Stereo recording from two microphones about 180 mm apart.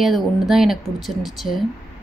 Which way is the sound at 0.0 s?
Centre (ahead or behind).